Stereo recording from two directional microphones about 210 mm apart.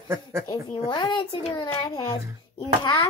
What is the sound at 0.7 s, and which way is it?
A child's voice, 20° left (ahead or behind).